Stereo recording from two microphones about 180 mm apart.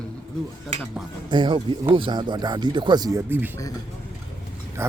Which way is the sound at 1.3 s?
25° right (ahead or behind).